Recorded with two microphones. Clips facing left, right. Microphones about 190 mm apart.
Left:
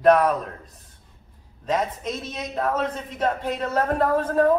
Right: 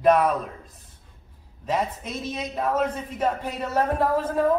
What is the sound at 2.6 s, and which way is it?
A man's voice, 10° right (ahead or behind).